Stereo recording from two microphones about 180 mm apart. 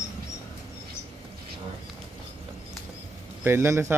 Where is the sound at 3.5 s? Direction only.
15° right (ahead or behind).